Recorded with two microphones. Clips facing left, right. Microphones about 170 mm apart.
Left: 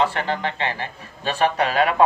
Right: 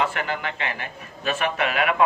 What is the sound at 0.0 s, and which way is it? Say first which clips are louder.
Speech: left 4 dB; 30° left (ahead or behind).